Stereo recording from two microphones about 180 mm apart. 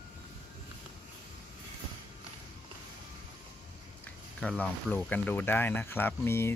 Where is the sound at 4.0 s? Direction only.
5° left (ahead or behind).